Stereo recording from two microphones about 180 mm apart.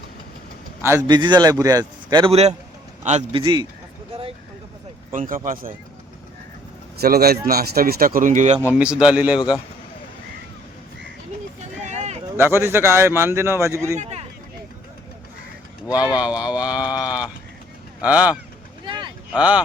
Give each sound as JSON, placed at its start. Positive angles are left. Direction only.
{"t": 0.9, "sound": "a man's voice", "side_deg": -20}
{"t": 2.3, "sound": "a man's voice", "side_deg": -35}
{"t": 5.1, "sound": "speech", "side_deg": -50}
{"t": 7.0, "sound": "speech", "side_deg": -60}
{"t": 8.7, "sound": "a man's voice", "side_deg": -5}
{"t": 11.6, "sound": "vehicle", "side_deg": -40}
{"t": 12.4, "sound": "a man's voice", "side_deg": -15}
{"t": 14.0, "sound": "a sound", "side_deg": -35}
{"t": 15.9, "sound": "a man's voice", "side_deg": -5}
{"t": 18.9, "sound": "a sound", "side_deg": -25}
{"t": 19.3, "sound": "a man's voice", "side_deg": -5}